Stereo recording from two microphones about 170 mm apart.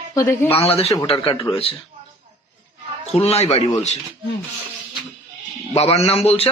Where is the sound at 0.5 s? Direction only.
35° left (ahead or behind).